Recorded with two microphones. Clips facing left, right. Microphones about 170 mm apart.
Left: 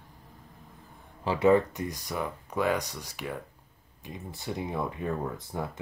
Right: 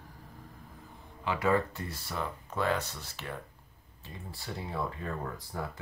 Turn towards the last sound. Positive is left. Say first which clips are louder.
# left 4 dB
turn(degrees=20)  # may be behind; listen again after turning